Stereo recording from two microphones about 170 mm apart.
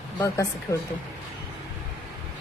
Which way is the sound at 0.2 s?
20° left (ahead or behind).